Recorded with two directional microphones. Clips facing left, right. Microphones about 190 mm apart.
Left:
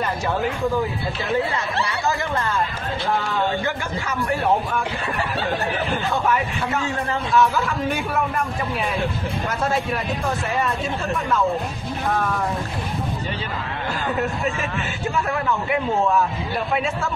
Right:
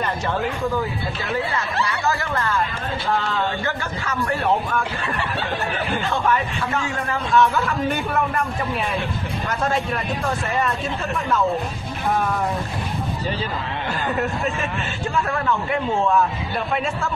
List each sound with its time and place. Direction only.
1.8 s speech: 20° left (ahead or behind)
7.3 s a man's voice: centre (ahead or behind)
14.1 s a man's voice: centre (ahead or behind)